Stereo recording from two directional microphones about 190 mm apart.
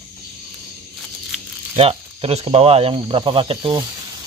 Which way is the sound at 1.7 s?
30° right (ahead or behind).